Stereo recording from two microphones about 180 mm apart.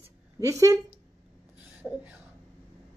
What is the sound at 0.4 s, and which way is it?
Speech, 20° right (ahead or behind).